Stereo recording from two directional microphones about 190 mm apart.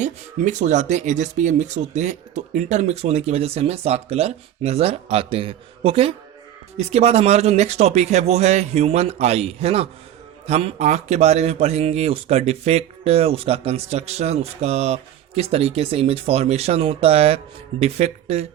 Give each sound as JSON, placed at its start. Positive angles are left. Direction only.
{"t": 0.0, "sound": "speech", "side_deg": -40}